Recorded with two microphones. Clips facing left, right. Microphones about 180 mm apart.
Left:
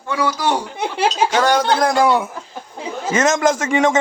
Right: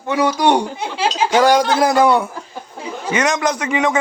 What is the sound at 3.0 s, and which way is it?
Speech, 45° left (ahead or behind).